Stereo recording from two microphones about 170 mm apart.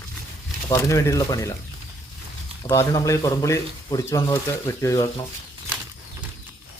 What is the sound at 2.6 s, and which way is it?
Speech, 20° left (ahead or behind).